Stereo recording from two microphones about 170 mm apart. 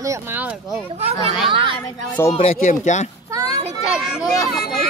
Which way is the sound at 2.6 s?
45° left (ahead or behind).